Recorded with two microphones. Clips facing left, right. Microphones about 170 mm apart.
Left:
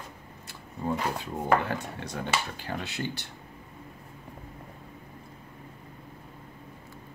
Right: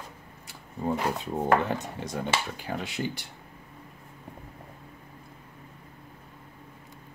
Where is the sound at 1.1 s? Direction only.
20° right (ahead or behind).